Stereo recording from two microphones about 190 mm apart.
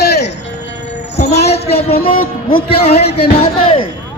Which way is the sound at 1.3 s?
35° left (ahead or behind).